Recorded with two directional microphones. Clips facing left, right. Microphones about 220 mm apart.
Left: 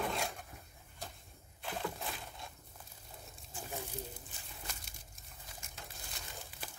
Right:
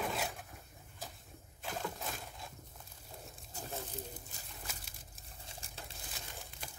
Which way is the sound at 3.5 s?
40° right (ahead or behind).